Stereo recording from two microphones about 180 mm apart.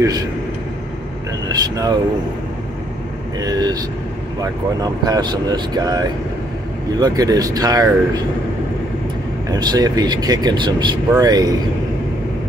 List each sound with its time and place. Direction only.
1.6 s speech: 20° right (ahead or behind)
3.3 s speech: 20° right (ahead or behind)
9.5 s speech: 20° right (ahead or behind)